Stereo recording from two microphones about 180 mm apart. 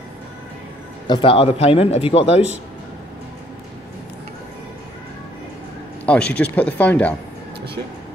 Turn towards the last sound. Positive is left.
turn(degrees=10)  # may be behind; listen again after turning